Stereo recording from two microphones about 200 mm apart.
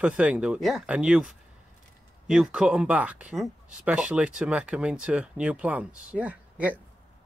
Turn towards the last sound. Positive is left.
turn(degrees=-5)  # may be behind; listen again after turning